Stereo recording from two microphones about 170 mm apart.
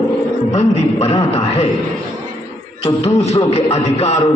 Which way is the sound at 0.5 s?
40° left (ahead or behind).